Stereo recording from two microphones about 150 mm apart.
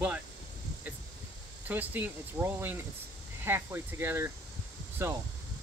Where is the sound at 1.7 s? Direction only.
10° right (ahead or behind).